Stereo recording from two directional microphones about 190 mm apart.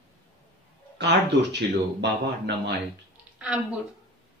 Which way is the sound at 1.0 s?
65° right (ahead or behind).